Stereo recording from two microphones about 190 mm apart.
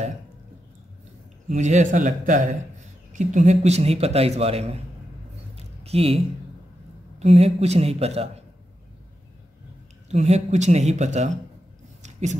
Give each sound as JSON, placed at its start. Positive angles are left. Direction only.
{"t": 1.5, "sound": "a man's voice", "side_deg": -40}
{"t": 5.9, "sound": "a man's voice", "side_deg": -30}
{"t": 10.0, "sound": "a man's voice", "side_deg": -35}
{"t": 12.0, "sound": "a sound", "side_deg": -40}